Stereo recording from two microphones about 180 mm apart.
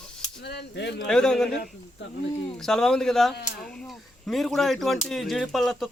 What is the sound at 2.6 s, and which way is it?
Speech, 5° left (ahead or behind).